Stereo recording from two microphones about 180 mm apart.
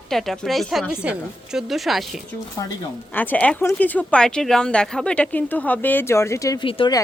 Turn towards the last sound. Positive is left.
turn(degrees=30)  # may be behind; listen again after turning